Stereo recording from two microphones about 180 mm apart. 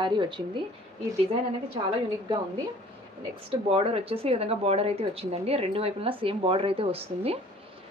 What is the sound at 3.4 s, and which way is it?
Speech, 30° right (ahead or behind).